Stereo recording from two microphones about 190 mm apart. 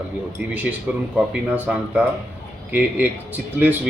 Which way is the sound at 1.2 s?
5° right (ahead or behind).